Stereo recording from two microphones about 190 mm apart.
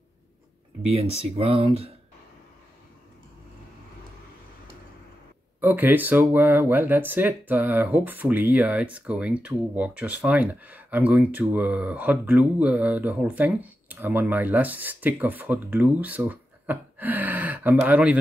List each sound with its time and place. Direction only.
0.8 s speech: 30° right (ahead or behind)
5.6 s speech: 10° right (ahead or behind)